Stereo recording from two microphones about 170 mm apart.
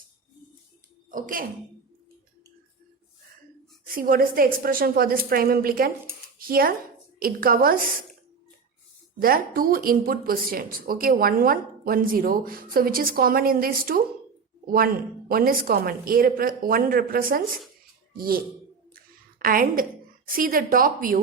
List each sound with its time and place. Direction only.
1.1 s speech: 55° right (ahead or behind)
3.8 s speech: 55° right (ahead or behind)
9.2 s speech: 60° right (ahead or behind)
15.3 s speech: 60° right (ahead or behind)
19.4 s speech: 60° right (ahead or behind)